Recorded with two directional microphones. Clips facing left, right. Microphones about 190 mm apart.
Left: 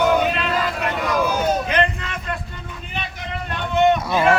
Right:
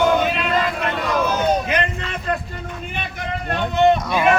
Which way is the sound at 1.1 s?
10° left (ahead or behind).